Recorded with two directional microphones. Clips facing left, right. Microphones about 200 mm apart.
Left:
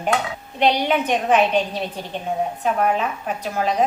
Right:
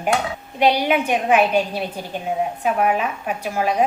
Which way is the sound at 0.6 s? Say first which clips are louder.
Right 1 dB; 10° right (ahead or behind).